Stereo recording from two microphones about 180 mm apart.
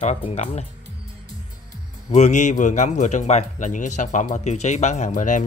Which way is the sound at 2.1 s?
40° left (ahead or behind).